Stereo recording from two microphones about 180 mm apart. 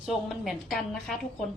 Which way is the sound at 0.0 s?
Centre (ahead or behind).